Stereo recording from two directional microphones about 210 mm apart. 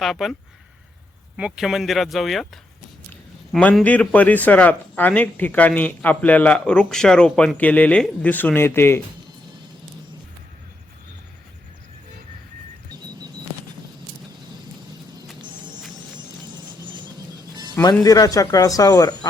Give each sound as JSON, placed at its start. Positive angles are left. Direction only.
{"t": 0.0, "sound": "speech", "side_deg": 0}
{"t": 1.4, "sound": "a man's voice", "side_deg": -5}
{"t": 12.9, "sound": "a sound", "side_deg": -20}
{"t": 16.8, "sound": "music", "side_deg": -20}
{"t": 17.7, "sound": "a man's voice", "side_deg": 15}